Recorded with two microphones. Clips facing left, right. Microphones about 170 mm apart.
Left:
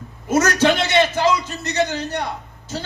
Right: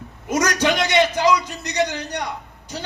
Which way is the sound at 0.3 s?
15° right (ahead or behind).